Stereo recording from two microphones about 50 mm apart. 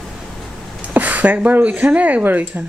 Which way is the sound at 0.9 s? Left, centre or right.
Right.